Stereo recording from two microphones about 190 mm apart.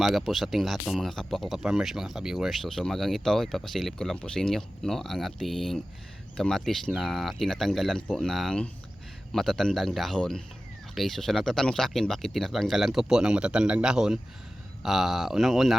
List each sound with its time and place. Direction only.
0.0 s speech: centre (ahead or behind)